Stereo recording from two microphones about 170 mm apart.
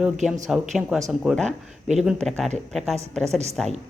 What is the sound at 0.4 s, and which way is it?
A woman's voice, centre (ahead or behind).